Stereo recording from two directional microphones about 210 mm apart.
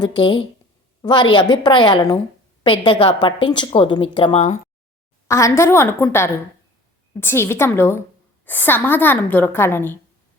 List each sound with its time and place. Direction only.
0.0 s a woman's voice: 20° left (ahead or behind)
5.3 s a woman's voice: 15° left (ahead or behind)